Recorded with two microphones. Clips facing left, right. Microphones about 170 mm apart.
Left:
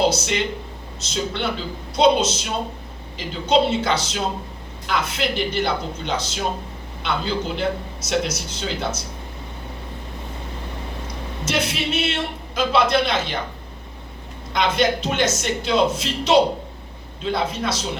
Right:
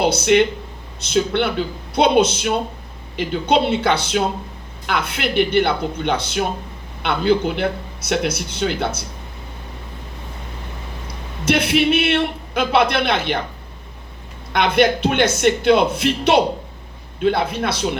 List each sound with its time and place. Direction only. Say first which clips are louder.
0.0 s a man's voice: right 5 dB; 60° right (ahead or behind)
11.4 s a man's voice: right 8 dB; 60° right (ahead or behind)
14.5 s a man's voice: right 4 dB; 60° right (ahead or behind)